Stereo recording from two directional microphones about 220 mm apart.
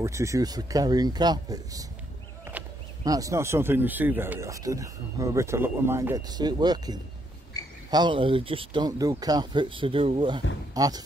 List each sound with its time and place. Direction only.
0.0 s speech: 15° right (ahead or behind)
3.0 s speech: 15° right (ahead or behind)